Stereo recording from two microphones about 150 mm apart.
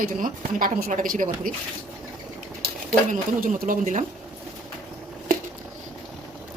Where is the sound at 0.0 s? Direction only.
70° right (ahead or behind).